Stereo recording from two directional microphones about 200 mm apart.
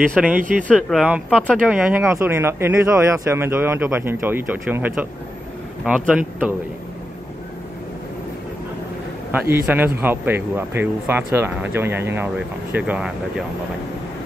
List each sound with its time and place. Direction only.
0.1 s speech: 5° right (ahead or behind)
0.4 s speech: 40° right (ahead or behind)
0.8 s speech: centre (ahead or behind)
9.3 s speech: 10° right (ahead or behind)